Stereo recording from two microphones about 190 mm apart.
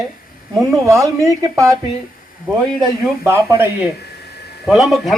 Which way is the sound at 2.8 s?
15° right (ahead or behind).